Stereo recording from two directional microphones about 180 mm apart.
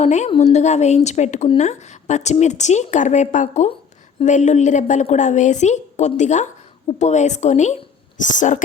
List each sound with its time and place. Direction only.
0.0 s speech: 40° left (ahead or behind)